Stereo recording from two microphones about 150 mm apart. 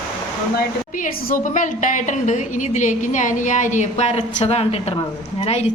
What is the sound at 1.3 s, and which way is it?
A woman's voice, 60° left (ahead or behind).